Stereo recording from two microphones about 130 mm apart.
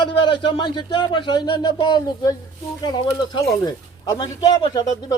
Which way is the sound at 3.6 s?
30° left (ahead or behind).